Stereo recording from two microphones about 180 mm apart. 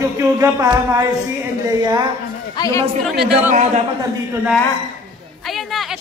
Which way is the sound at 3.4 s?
40° right (ahead or behind).